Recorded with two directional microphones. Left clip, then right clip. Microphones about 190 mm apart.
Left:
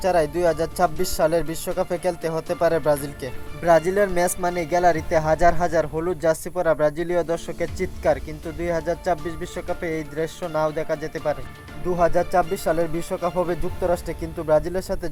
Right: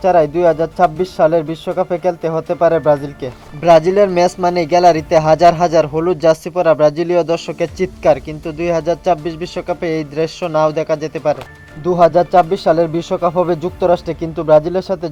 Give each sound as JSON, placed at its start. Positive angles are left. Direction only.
{"t": 0.0, "sound": "speech", "side_deg": 10}
{"t": 8.7, "sound": "speech", "side_deg": 15}